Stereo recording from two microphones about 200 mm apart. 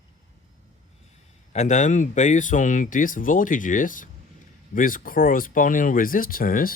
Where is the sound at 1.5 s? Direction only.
35° left (ahead or behind).